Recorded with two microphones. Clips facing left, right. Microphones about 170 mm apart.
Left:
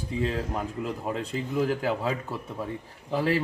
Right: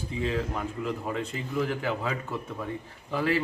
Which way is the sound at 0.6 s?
35° left (ahead or behind).